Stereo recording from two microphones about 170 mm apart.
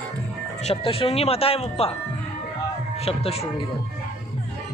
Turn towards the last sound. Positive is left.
turn(degrees=35)  # may be behind; listen again after turning